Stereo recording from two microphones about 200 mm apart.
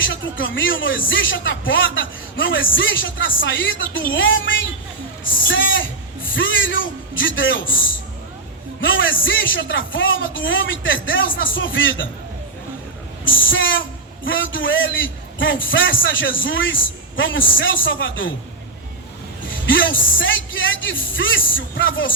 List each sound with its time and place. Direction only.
0.0 s speech: 70° left (ahead or behind)
8.8 s speech: 70° left (ahead or behind)
13.5 s speech: 70° left (ahead or behind)
19.6 s speech: 70° left (ahead or behind)